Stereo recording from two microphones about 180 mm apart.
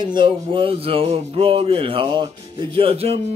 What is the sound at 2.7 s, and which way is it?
Speech, 30° right (ahead or behind).